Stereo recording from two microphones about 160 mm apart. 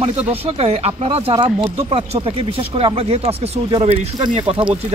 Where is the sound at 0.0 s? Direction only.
40° right (ahead or behind).